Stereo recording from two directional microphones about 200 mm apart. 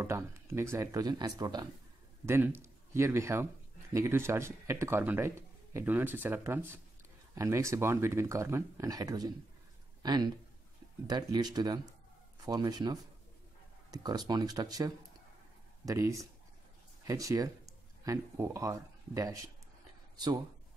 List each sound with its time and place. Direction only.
0.0 s speech: 15° right (ahead or behind)